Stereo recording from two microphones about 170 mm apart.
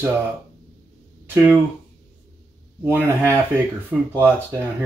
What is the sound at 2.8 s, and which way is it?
Speech, 10° right (ahead or behind).